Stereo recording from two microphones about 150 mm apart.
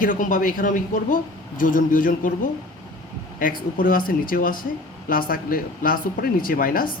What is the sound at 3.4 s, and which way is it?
Speech, 70° left (ahead or behind).